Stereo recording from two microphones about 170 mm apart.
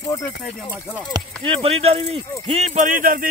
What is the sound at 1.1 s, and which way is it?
Speech, 30° right (ahead or behind).